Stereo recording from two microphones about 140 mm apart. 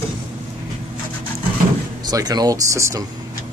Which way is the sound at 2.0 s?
30° right (ahead or behind).